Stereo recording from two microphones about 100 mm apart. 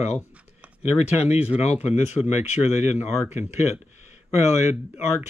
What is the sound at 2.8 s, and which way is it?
Speech, 20° right (ahead or behind).